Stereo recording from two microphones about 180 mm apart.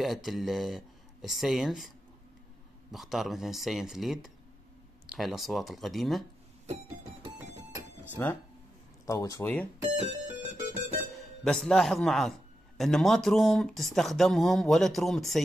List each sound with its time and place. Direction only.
0.0 s a man's voice: centre (ahead or behind)
2.9 s a man's voice: centre (ahead or behind)
8.2 s speech: 10° left (ahead or behind)
10.4 s music: 45° right (ahead or behind)
11.1 s a man's voice: centre (ahead or behind)